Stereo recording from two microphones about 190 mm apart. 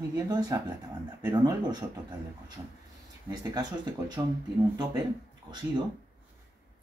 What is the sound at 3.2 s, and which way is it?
Speech, 20° right (ahead or behind).